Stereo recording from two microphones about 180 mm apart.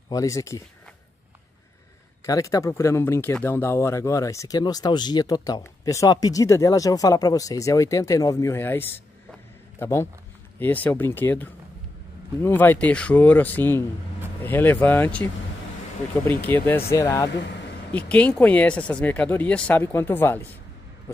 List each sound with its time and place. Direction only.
0.1 s speech: 20° left (ahead or behind)
2.2 s speech: 20° left (ahead or behind)
16.3 s speech: 10° left (ahead or behind)